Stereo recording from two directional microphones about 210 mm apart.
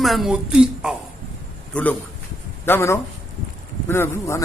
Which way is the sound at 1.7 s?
5° left (ahead or behind).